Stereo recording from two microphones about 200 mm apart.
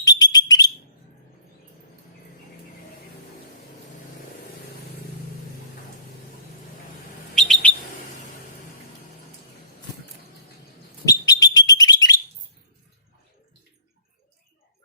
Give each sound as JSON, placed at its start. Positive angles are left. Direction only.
{"t": 0.0, "sound": "bird", "side_deg": 20}
{"t": 7.3, "sound": "bird", "side_deg": 5}
{"t": 11.0, "sound": "bird", "side_deg": 20}